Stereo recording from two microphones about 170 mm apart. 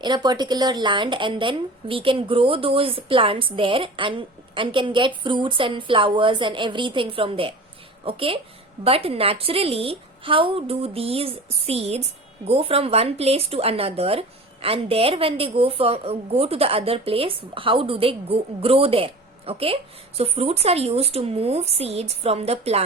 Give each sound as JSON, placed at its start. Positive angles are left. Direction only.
{"t": 0.0, "sound": "speech", "side_deg": -25}